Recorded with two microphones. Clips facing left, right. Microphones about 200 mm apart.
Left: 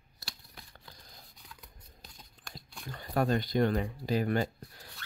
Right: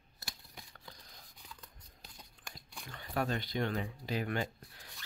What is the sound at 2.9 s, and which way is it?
Speech, 40° left (ahead or behind).